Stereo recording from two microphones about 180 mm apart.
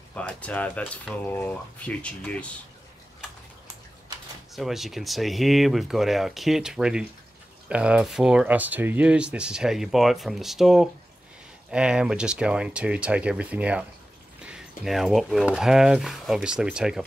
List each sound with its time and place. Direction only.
0.1 s speech: 5° left (ahead or behind)
4.6 s speech: centre (ahead or behind)